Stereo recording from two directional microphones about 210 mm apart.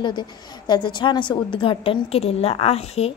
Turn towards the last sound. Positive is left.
turn(degrees=30)  # may be behind; listen again after turning